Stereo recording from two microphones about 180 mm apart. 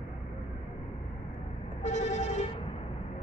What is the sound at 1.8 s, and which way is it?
Vehicle, 40° left (ahead or behind).